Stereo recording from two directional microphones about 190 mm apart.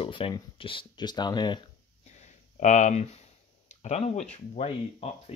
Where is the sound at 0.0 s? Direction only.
25° left (ahead or behind).